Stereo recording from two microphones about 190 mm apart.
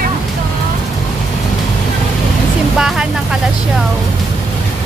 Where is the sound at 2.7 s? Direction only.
5° right (ahead or behind).